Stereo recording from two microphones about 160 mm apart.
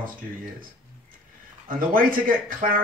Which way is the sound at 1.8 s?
60° right (ahead or behind).